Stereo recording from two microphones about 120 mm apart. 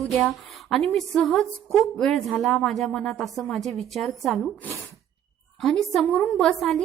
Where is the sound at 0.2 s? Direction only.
Centre (ahead or behind).